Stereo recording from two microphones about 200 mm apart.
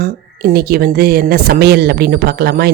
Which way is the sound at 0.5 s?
50° right (ahead or behind).